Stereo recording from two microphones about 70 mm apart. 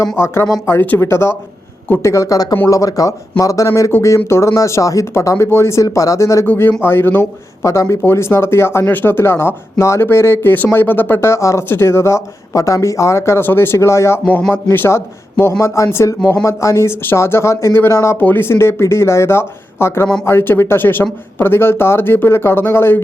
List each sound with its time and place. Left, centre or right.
0.7 s speech: left
3.9 s speech: left
5.8 s speech: left
6.4 s speech: left
7.6 s speech: left
11.3 s speech: left
18.2 s speech: left